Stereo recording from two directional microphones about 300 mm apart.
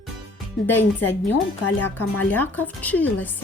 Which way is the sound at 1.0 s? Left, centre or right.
Left.